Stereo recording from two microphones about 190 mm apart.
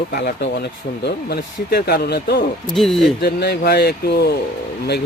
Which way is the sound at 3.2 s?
60° left (ahead or behind).